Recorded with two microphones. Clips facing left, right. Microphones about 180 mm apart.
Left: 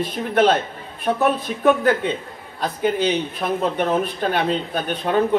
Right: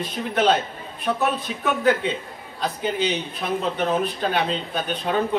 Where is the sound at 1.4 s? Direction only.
55° left (ahead or behind).